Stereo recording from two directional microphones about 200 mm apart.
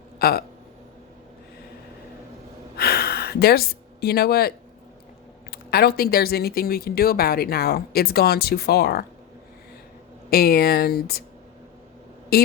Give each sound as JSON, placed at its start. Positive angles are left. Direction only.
{"t": 0.2, "sound": "speech", "side_deg": 50}
{"t": 2.7, "sound": "a sound", "side_deg": 50}
{"t": 4.0, "sound": "speech", "side_deg": 50}
{"t": 10.2, "sound": "speech", "side_deg": 50}
{"t": 12.3, "sound": "speech", "side_deg": 50}